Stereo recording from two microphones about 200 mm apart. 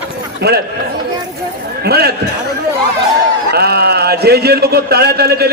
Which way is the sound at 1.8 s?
55° right (ahead or behind).